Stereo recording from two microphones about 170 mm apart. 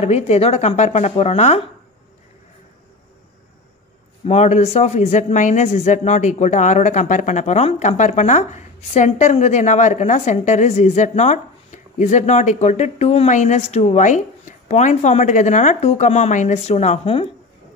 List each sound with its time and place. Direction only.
0.0 s a woman's voice: 40° left (ahead or behind)
4.3 s speech: 40° left (ahead or behind)